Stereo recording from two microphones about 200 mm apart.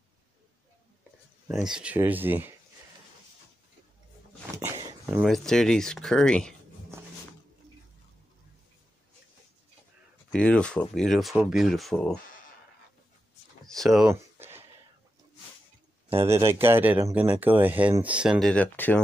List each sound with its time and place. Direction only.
1.5 s speech: centre (ahead or behind)
4.6 s a sound: 15° right (ahead or behind)
5.2 s speech: centre (ahead or behind)
10.3 s speech: 5° left (ahead or behind)
13.7 s speech: centre (ahead or behind)
14.1 s a sound: 10° right (ahead or behind)
16.2 s speech: 15° right (ahead or behind)
18.4 s speech: 5° left (ahead or behind)